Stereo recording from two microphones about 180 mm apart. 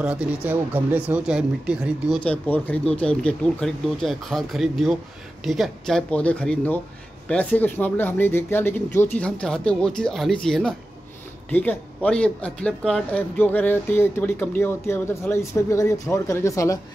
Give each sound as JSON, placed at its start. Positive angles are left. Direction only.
{"t": 0.0, "sound": "speech", "side_deg": -5}
{"t": 2.2, "sound": "speech", "side_deg": 10}